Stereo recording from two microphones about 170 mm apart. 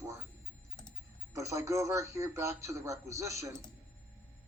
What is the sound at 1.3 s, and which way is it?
A man's voice, 20° right (ahead or behind).